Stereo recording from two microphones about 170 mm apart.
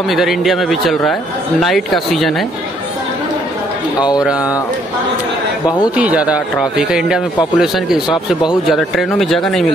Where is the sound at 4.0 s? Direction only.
25° left (ahead or behind).